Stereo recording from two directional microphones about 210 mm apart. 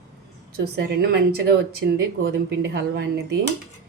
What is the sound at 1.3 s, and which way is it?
A woman's voice, 50° right (ahead or behind).